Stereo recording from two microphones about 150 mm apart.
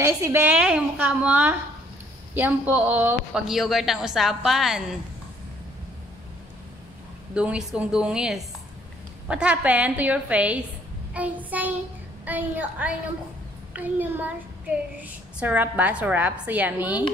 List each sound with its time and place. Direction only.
0.0 s a child's voice: 15° right (ahead or behind)
3.4 s a woman's voice: centre (ahead or behind)
7.3 s a woman's voice: 5° right (ahead or behind)